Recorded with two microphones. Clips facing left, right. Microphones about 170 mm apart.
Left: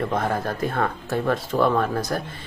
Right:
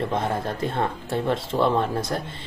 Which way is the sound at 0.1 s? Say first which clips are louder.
Left 1 dB; 25° right (ahead or behind).